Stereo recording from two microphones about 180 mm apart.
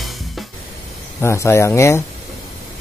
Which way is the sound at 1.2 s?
15° left (ahead or behind).